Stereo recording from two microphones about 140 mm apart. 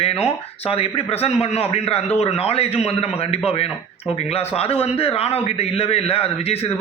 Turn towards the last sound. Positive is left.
turn(degrees=45)  # may be behind; listen again after turning